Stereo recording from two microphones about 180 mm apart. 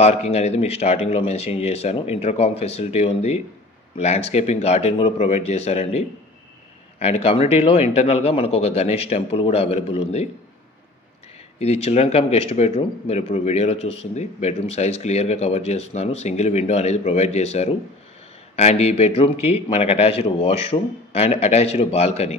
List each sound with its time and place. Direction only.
0.0 s speech: 35° left (ahead or behind)
11.6 s speech: 35° left (ahead or behind)